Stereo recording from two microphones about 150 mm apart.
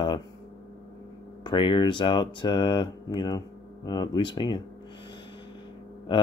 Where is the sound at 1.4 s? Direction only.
30° left (ahead or behind).